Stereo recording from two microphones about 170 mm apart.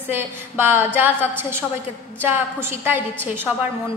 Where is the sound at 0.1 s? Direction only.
15° right (ahead or behind).